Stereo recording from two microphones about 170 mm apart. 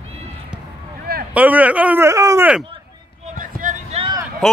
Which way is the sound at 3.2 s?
50° right (ahead or behind).